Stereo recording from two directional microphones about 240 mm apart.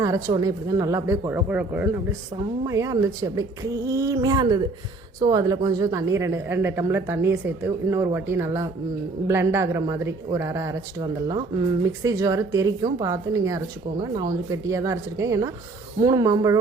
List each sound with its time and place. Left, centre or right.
0.0 s speech: centre